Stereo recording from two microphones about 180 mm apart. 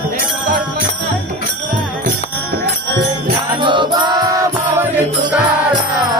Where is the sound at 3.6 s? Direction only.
25° right (ahead or behind).